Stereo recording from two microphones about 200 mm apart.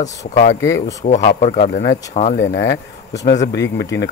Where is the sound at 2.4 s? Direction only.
60° left (ahead or behind).